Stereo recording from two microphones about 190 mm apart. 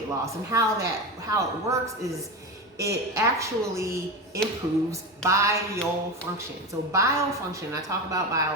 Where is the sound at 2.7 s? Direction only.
15° right (ahead or behind).